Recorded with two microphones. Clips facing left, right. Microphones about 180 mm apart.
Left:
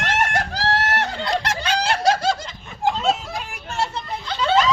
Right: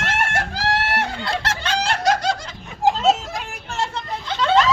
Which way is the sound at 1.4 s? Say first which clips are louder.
Left 1 dB; 15° left (ahead or behind).